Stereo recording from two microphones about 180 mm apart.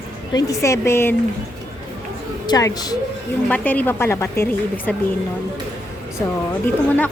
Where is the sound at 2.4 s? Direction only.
20° left (ahead or behind).